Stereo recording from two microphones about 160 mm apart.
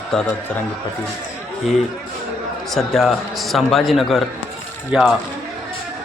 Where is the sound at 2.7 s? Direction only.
Centre (ahead or behind).